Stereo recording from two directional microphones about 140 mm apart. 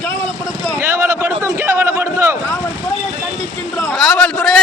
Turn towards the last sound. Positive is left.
turn(degrees=5)  # may be behind; listen again after turning